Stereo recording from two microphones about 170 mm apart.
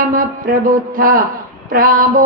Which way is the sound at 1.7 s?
55° right (ahead or behind).